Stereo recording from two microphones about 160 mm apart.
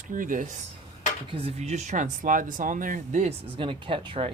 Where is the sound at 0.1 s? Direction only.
55° right (ahead or behind).